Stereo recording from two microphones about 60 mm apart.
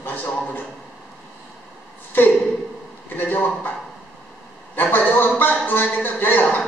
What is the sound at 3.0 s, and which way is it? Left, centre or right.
Speech, left.